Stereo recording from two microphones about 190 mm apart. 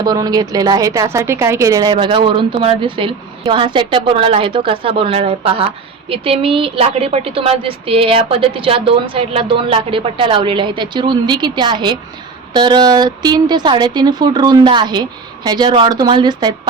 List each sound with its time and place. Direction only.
0.0 s a woman's voice: 20° right (ahead or behind)